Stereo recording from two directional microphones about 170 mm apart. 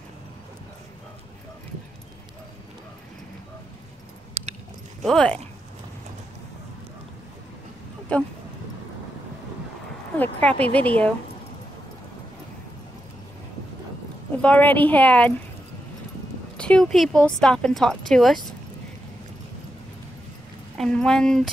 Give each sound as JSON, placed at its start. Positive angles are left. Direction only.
{"t": 4.3, "sound": "a sound", "side_deg": -40}
{"t": 5.0, "sound": "speech", "side_deg": 5}
{"t": 8.1, "sound": "speech", "side_deg": 5}
{"t": 10.1, "sound": "speech", "side_deg": 10}
{"t": 14.3, "sound": "speech", "side_deg": 5}
{"t": 16.5, "sound": "speech", "side_deg": 5}
{"t": 20.7, "sound": "a woman's voice", "side_deg": 5}